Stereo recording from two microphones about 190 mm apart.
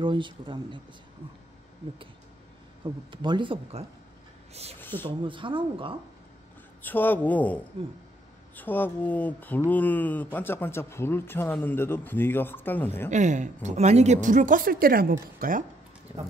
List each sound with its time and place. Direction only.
0.0 s speech: 25° right (ahead or behind)
2.8 s speech: 25° right (ahead or behind)
4.7 s speech: 10° left (ahead or behind)
5.0 s speech: 25° right (ahead or behind)
6.8 s speech: 10° left (ahead or behind)
13.1 s a woman's voice: 40° right (ahead or behind)